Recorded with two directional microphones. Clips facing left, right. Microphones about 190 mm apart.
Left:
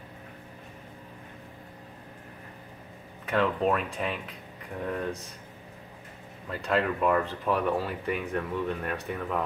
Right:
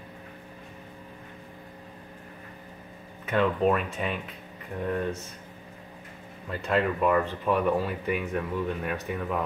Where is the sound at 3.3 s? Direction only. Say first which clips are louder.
Right 2 dB; centre (ahead or behind).